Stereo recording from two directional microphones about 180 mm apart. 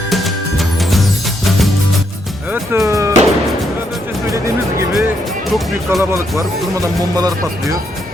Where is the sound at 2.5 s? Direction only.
15° right (ahead or behind).